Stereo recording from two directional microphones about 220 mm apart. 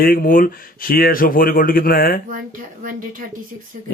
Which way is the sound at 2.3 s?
40° right (ahead or behind).